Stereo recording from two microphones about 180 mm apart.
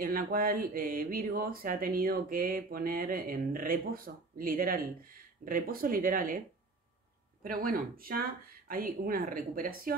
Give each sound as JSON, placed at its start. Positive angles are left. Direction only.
{"t": 0.0, "sound": "speech", "side_deg": -50}
{"t": 7.4, "sound": "speech", "side_deg": -55}